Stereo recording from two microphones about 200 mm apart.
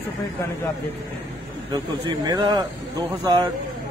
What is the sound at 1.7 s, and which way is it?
Speech, 20° right (ahead or behind).